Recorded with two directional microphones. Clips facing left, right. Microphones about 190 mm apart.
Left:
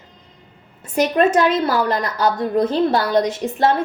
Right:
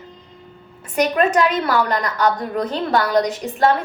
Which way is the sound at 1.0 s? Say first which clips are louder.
Left 1 dB; 30° left (ahead or behind).